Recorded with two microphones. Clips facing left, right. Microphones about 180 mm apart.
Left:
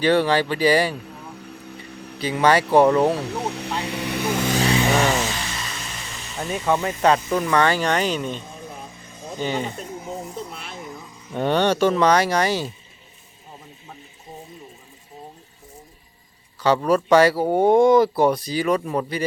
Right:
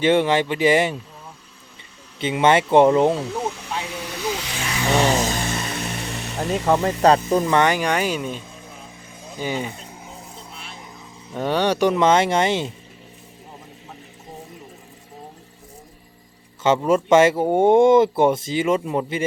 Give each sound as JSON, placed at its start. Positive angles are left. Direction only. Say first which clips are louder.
{"t": 0.0, "sound": "speech", "louder": "right 1 dB", "side_deg": -20}
{"t": 2.1, "sound": "speech", "louder": "right 1 dB", "side_deg": -25}
{"t": 3.5, "sound": "speech", "louder": "left 3 dB", "side_deg": 65}
{"t": 5.0, "sound": "vehicle", "louder": "right 2 dB", "side_deg": -40}
{"t": 6.8, "sound": "speech", "louder": "right 3 dB", "side_deg": -35}
{"t": 9.4, "sound": "speech", "louder": "left 1 dB", "side_deg": -10}
{"t": 10.5, "sound": "a sound", "louder": "left 3 dB", "side_deg": 55}
{"t": 11.3, "sound": "speech", "louder": "left 1 dB", "side_deg": -10}
{"t": 16.6, "sound": "speech", "louder": "right 1 dB", "side_deg": -20}